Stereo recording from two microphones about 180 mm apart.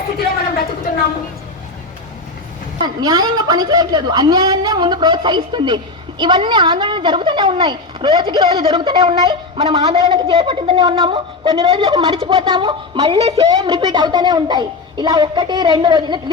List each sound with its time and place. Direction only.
2.8 s a woman's voice: 20° right (ahead or behind)